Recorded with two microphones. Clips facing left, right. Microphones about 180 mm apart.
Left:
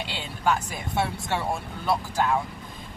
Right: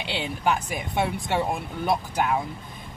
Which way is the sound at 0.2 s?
15° right (ahead or behind).